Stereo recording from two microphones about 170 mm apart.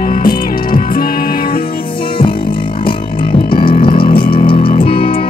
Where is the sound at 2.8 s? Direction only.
30° left (ahead or behind).